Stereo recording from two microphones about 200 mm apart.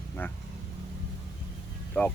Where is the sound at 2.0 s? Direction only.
5° left (ahead or behind).